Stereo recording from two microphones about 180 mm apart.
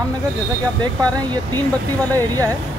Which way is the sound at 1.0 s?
20° right (ahead or behind).